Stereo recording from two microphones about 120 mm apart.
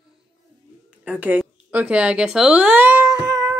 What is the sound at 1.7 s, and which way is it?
Speech, 10° right (ahead or behind).